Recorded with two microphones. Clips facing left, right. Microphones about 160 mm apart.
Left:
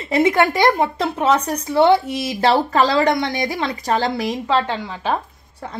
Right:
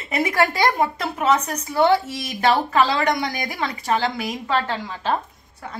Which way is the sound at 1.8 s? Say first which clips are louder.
Left 4 dB; 20° left (ahead or behind).